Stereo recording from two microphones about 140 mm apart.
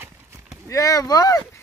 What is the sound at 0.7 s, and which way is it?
Speech, 25° left (ahead or behind).